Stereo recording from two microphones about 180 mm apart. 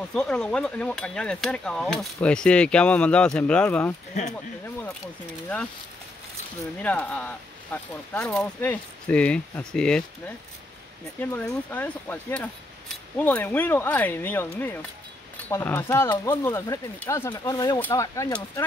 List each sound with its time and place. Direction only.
0.1 s speech: 5° left (ahead or behind)
4.1 s speech: 40° left (ahead or behind)
6.8 s speech: 10° left (ahead or behind)
17.7 s speech: 10° left (ahead or behind)
18.0 s speech: 20° left (ahead or behind)